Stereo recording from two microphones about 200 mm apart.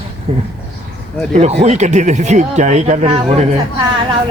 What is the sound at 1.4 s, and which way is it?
Speech, 35° right (ahead or behind).